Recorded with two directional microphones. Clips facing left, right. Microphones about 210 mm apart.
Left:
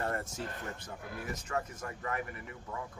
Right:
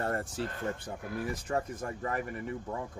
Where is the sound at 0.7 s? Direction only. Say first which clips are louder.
Right 6 dB; 30° right (ahead or behind).